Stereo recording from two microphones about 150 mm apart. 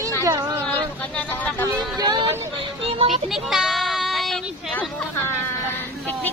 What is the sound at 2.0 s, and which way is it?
Music, 25° right (ahead or behind).